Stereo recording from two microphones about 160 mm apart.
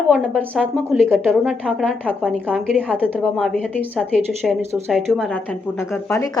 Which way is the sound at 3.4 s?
5° left (ahead or behind).